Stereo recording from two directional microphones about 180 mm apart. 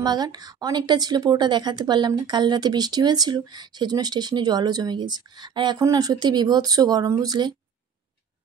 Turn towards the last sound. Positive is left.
turn(degrees=-25)  # may be behind; listen again after turning